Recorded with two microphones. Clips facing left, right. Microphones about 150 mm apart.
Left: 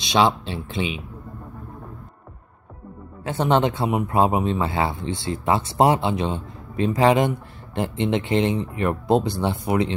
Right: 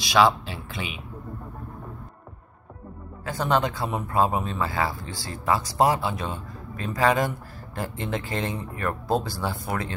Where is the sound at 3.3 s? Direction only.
25° left (ahead or behind).